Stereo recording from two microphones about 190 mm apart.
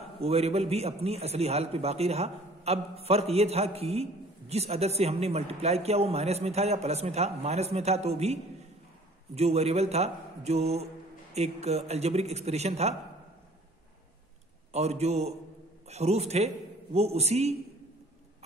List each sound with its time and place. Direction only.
0.2 s a man's voice: 35° right (ahead or behind)
14.7 s a man's voice: 35° right (ahead or behind)